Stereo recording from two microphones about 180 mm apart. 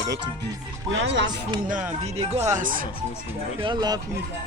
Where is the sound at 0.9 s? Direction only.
90° right.